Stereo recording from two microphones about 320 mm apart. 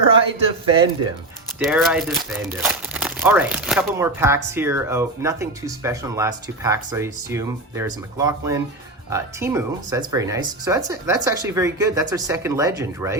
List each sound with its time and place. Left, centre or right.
0.1 s speech: centre
1.5 s speech: centre